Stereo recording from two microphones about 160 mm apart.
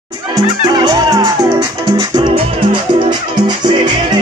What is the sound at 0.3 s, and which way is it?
Music, 25° right (ahead or behind).